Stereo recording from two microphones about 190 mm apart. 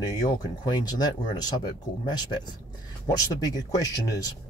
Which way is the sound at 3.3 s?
20° left (ahead or behind).